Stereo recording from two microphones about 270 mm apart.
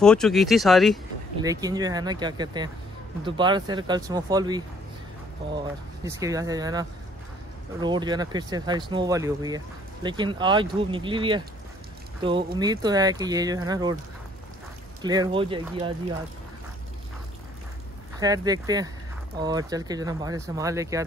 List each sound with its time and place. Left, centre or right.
0.0 s speech: centre
1.4 s speech: centre
6.0 s speech: centre
15.0 s speech: centre
18.2 s speech: centre